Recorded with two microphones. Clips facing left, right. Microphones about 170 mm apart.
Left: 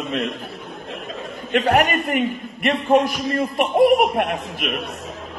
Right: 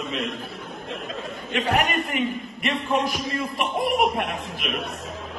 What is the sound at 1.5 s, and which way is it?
A man's voice, 55° left (ahead or behind).